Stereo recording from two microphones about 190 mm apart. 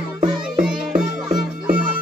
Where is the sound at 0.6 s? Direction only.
5° right (ahead or behind).